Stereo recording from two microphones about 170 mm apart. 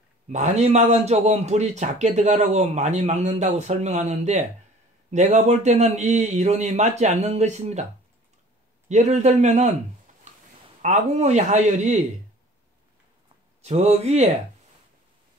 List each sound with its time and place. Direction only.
0.3 s a man's voice: 40° right (ahead or behind)
8.8 s a man's voice: 40° right (ahead or behind)
10.8 s a man's voice: 40° right (ahead or behind)
13.6 s a man's voice: 40° right (ahead or behind)